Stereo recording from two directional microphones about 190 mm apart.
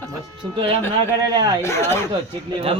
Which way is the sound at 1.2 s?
20° right (ahead or behind).